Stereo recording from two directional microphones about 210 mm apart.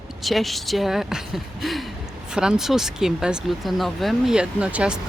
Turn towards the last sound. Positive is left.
turn(degrees=-5)  # may be behind; listen again after turning